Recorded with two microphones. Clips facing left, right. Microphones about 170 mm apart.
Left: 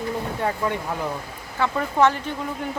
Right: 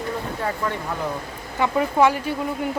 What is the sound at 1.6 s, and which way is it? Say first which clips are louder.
Speech: right 2 dB; 10° right (ahead or behind).